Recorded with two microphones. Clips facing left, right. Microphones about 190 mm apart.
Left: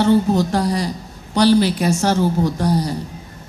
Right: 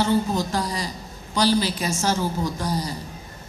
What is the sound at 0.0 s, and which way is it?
A woman's voice, 65° left (ahead or behind).